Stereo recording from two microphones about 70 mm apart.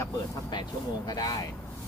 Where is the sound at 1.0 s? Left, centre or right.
Left.